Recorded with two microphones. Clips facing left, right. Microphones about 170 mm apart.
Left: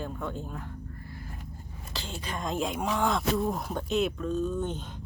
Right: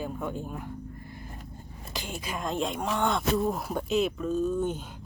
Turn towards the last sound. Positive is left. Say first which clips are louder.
# right 3 dB
turn(degrees=-10)  # may be behind; listen again after turning